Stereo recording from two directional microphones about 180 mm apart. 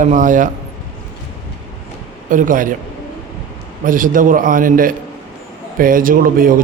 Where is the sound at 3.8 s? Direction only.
50° right (ahead or behind).